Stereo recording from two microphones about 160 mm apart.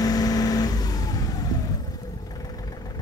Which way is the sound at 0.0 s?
25° left (ahead or behind).